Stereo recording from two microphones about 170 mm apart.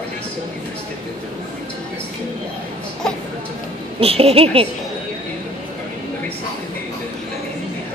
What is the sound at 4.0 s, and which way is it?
Speech, 35° right (ahead or behind).